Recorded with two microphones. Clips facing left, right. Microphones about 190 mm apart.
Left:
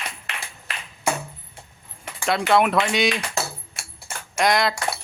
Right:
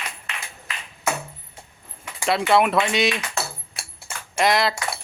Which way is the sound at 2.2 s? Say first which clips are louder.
Even; centre (ahead or behind).